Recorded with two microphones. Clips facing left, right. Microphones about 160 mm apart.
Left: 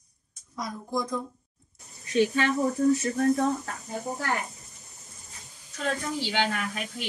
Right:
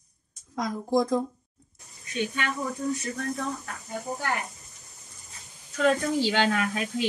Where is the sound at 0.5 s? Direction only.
90° right.